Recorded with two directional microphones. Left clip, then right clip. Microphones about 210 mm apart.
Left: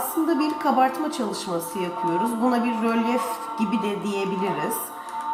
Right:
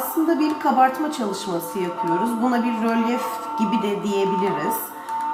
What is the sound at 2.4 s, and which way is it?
Speech, 10° left (ahead or behind).